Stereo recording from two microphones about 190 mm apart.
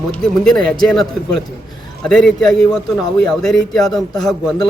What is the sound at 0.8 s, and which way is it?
Speech, centre (ahead or behind).